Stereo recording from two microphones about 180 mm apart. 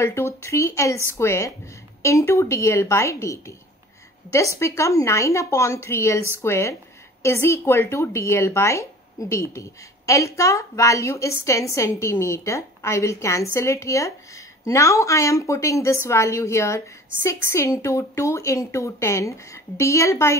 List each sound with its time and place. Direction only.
0.0 s speech: 15° left (ahead or behind)